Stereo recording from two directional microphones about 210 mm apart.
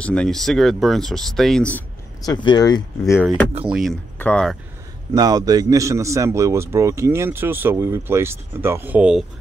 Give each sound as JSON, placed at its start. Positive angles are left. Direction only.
{"t": 0.0, "sound": "speech", "side_deg": 5}
{"t": 2.2, "sound": "speech", "side_deg": 20}
{"t": 3.7, "sound": "speech", "side_deg": 0}
{"t": 5.1, "sound": "a man's voice", "side_deg": -20}